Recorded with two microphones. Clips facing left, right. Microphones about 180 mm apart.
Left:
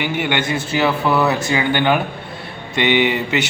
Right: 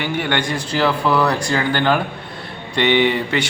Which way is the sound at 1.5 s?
15° left (ahead or behind).